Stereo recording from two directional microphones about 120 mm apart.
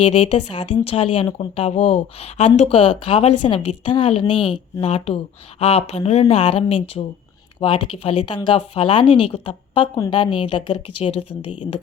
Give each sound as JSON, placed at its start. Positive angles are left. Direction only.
{"t": 0.0, "sound": "a woman's voice", "side_deg": 55}